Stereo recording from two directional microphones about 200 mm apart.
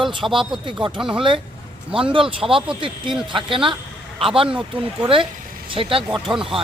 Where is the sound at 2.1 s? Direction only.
25° right (ahead or behind).